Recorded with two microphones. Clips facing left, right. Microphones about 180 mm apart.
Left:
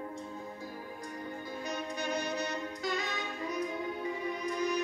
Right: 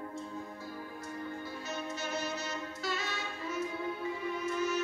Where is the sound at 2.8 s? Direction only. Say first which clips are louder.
Left 2 dB; 15° left (ahead or behind).